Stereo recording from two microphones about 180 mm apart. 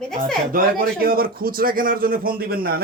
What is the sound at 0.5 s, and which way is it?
Speech, 55° right (ahead or behind).